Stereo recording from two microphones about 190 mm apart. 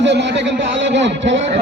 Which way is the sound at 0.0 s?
70° right (ahead or behind).